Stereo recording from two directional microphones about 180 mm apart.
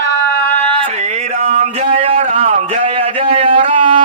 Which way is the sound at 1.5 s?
35° right (ahead or behind).